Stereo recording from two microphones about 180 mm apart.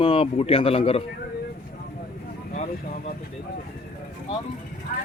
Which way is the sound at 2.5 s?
45° left (ahead or behind).